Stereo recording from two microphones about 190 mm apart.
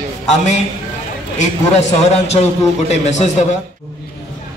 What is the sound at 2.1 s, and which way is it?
A man's voice, 35° left (ahead or behind).